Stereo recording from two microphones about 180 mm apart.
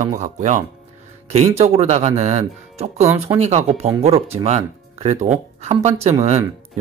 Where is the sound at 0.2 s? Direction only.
40° right (ahead or behind).